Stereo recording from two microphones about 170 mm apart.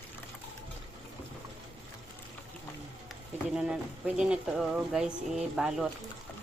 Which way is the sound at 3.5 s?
5° right (ahead or behind).